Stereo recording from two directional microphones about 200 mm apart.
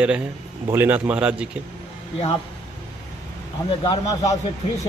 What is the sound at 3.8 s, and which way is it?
Speech, 20° left (ahead or behind).